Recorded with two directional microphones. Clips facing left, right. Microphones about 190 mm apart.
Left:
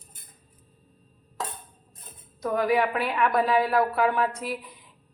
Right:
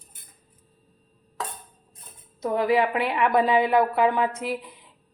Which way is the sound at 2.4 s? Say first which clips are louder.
Right 2 dB; 25° right (ahead or behind).